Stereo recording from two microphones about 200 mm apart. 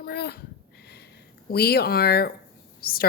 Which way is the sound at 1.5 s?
50° left (ahead or behind).